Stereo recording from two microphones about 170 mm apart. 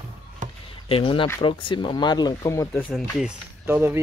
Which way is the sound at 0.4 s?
45° right (ahead or behind).